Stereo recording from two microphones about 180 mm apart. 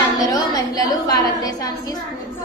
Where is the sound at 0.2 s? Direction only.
20° left (ahead or behind).